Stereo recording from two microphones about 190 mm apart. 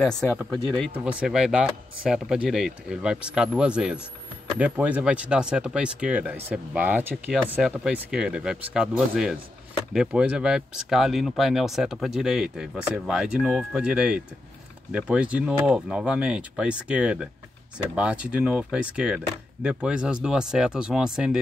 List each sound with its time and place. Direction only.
0.1 s speech: 15° left (ahead or behind)
0.9 s speech: 5° right (ahead or behind)